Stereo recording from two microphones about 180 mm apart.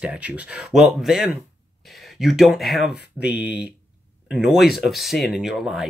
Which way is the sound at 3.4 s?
65° left (ahead or behind).